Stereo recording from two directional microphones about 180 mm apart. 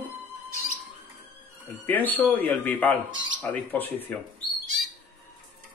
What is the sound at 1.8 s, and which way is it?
Speech, 10° left (ahead or behind).